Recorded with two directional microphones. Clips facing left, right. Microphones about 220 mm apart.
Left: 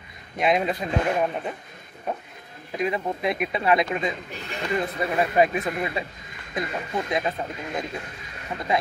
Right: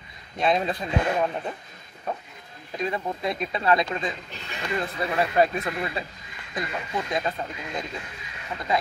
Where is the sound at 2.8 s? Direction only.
20° left (ahead or behind).